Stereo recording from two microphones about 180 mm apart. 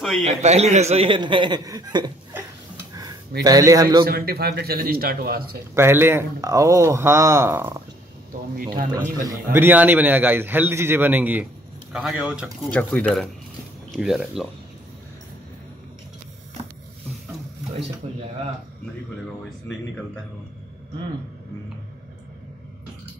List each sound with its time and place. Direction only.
0.2 s a man's voice: 40° right (ahead or behind)
3.4 s a man's voice: 20° right (ahead or behind)
4.0 s a man's voice: 60° right (ahead or behind)
5.8 s a man's voice: 15° right (ahead or behind)
8.3 s speech: 50° right (ahead or behind)
9.0 s a man's voice: 15° right (ahead or behind)
18.0 s speech: 35° right (ahead or behind)